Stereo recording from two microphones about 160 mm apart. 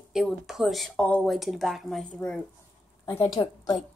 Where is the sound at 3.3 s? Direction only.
25° left (ahead or behind).